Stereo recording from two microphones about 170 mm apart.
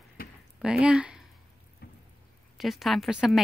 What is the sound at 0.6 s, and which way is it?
Speech, 5° right (ahead or behind).